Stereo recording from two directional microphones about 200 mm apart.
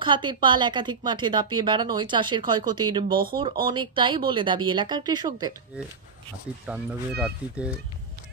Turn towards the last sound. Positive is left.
turn(degrees=-5)  # may be behind; listen again after turning